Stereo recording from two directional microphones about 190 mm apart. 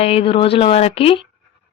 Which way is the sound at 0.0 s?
30° left (ahead or behind).